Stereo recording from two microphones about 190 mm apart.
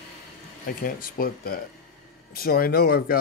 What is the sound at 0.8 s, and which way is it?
Speech, 45° left (ahead or behind).